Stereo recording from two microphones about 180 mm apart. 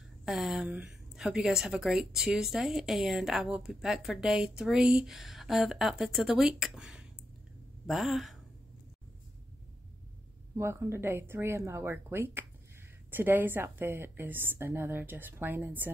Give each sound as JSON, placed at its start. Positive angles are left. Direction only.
{"t": 0.2, "sound": "a woman's voice", "side_deg": 0}
{"t": 10.5, "sound": "a woman's voice", "side_deg": -15}